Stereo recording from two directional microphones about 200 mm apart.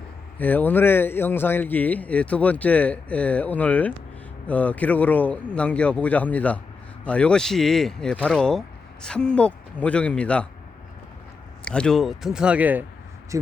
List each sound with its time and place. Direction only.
0.3 s a man's voice: 10° left (ahead or behind)
11.6 s speech: 5° left (ahead or behind); by 13.5 s 15° right (ahead or behind)